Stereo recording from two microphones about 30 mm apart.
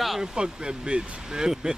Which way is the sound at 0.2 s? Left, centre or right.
Right.